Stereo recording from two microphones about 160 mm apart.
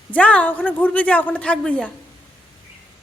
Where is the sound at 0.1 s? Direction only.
10° left (ahead or behind).